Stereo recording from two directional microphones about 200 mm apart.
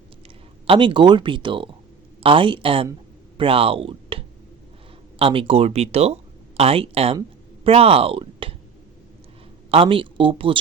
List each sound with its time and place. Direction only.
0.7 s speech: 25° right (ahead or behind)
5.2 s speech: 30° right (ahead or behind)
9.7 s speech: 25° right (ahead or behind)